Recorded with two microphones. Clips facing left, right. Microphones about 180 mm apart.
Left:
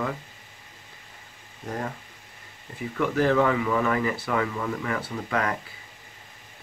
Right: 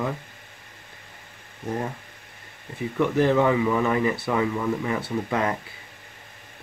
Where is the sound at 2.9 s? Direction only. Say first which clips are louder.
Right 2 dB; 20° right (ahead or behind).